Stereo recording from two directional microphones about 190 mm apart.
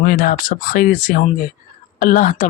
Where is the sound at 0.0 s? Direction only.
50° left (ahead or behind).